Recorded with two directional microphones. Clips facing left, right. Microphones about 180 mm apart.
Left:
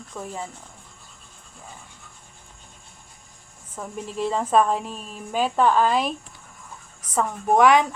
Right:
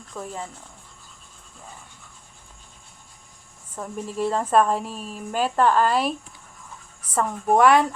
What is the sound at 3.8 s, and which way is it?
A woman's voice, centre (ahead or behind).